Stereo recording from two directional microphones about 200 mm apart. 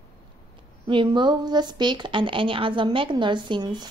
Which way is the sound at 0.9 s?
25° right (ahead or behind).